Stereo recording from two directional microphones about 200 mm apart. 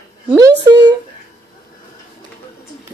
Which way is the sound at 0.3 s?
15° right (ahead or behind).